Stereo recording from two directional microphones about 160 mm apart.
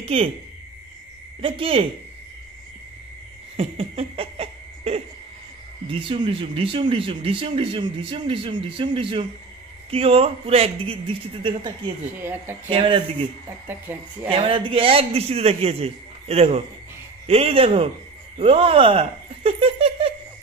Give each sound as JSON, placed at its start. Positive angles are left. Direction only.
{"t": 0.0, "sound": "speech", "side_deg": -35}
{"t": 1.4, "sound": "speech", "side_deg": -35}
{"t": 3.5, "sound": "laughter", "side_deg": -40}
{"t": 5.9, "sound": "speech", "side_deg": -35}
{"t": 12.2, "sound": "speech", "side_deg": -10}
{"t": 12.6, "sound": "speech", "side_deg": -35}
{"t": 13.7, "sound": "speech", "side_deg": -10}
{"t": 14.3, "sound": "speech", "side_deg": -35}